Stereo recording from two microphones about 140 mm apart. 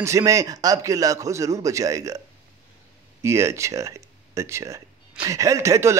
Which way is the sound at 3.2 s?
20° right (ahead or behind).